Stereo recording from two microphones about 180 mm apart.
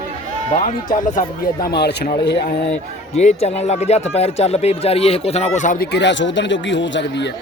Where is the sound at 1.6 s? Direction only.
65° left (ahead or behind).